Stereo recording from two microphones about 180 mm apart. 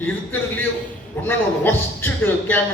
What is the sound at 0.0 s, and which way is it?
A man's voice, 10° left (ahead or behind).